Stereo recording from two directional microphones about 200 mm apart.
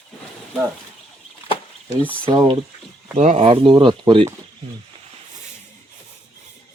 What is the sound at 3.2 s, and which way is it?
Speech, 35° right (ahead or behind).